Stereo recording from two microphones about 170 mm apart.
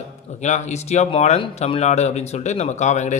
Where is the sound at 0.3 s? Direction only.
45° left (ahead or behind).